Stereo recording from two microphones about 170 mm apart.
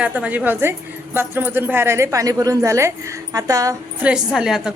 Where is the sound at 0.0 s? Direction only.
10° right (ahead or behind).